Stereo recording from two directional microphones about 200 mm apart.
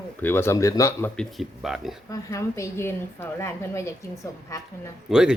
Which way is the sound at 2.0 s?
15° left (ahead or behind).